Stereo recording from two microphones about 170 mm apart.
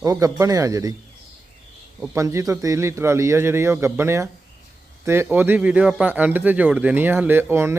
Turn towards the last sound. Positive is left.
turn(degrees=-15)  # may be behind; listen again after turning